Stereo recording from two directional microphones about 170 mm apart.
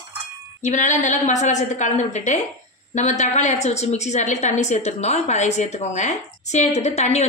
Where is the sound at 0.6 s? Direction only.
45° left (ahead or behind).